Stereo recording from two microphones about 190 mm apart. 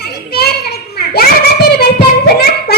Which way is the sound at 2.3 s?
55° left (ahead or behind).